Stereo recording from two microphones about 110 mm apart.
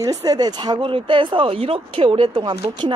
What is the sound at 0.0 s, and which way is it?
A woman's voice, 35° right (ahead or behind).